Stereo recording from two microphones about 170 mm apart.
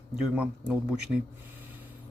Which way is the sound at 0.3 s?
5° right (ahead or behind).